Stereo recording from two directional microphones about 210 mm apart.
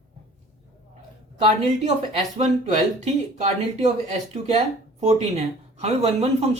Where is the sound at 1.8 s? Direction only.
35° right (ahead or behind).